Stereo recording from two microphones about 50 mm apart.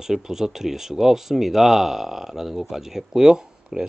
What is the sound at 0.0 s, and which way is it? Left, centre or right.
Speech, centre.